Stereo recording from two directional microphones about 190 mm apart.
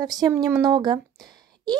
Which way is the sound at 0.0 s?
20° right (ahead or behind).